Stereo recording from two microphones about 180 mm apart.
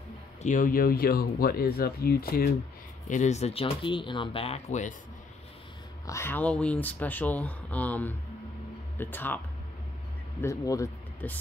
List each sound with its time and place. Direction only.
0.4 s speech: 45° left (ahead or behind)
3.1 s speech: 40° left (ahead or behind)
6.0 s speech: 15° left (ahead or behind)
10.4 s speech: 20° left (ahead or behind)